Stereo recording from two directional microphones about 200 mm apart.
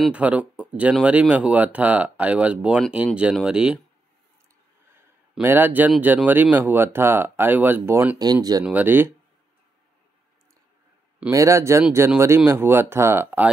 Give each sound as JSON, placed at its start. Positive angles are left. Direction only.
{"t": 0.0, "sound": "speech", "side_deg": -5}
{"t": 5.3, "sound": "speech", "side_deg": -10}
{"t": 11.1, "sound": "speech", "side_deg": -15}